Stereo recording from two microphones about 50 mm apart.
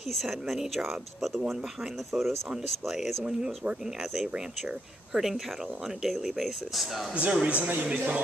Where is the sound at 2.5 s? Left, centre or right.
Centre.